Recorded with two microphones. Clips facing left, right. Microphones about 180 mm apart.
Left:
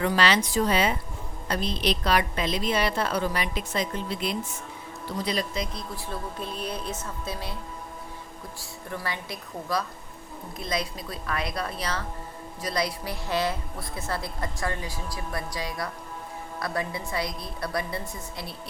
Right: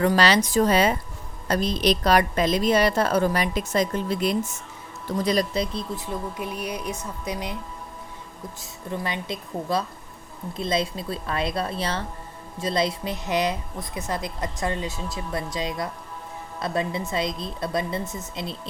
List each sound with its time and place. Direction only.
0.0 s a woman's voice: 40° right (ahead or behind)
5.7 s a woman's voice: 15° right (ahead or behind)
8.9 s a woman's voice: 20° right (ahead or behind)